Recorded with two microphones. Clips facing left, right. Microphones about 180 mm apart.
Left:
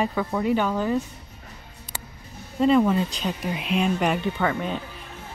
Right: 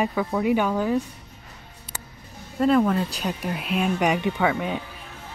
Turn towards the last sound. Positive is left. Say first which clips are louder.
# right 2 dB
turn(degrees=-10)  # may be behind; listen again after turning